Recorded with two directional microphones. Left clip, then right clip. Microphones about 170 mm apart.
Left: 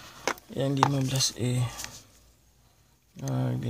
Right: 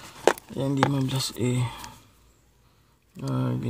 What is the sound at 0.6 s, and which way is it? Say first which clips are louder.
Speech: even; 15° left (ahead or behind).